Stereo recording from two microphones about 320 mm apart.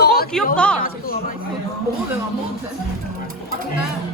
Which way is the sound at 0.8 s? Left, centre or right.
Left.